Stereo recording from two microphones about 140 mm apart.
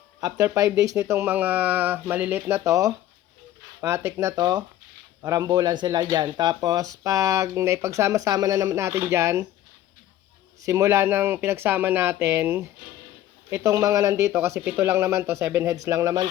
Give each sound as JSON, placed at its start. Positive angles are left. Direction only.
{"t": 0.2, "sound": "speech", "side_deg": -25}
{"t": 10.6, "sound": "speech", "side_deg": -25}